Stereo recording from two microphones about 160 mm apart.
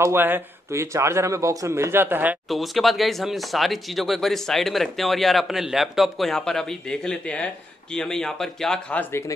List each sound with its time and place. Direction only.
0.0 s speech: 15° right (ahead or behind)
2.5 s speech: centre (ahead or behind)